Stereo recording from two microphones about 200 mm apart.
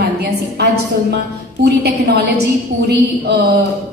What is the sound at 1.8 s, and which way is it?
A man's voice, 55° right (ahead or behind).